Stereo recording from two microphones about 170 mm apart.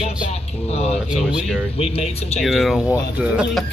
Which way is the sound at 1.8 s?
35° left (ahead or behind).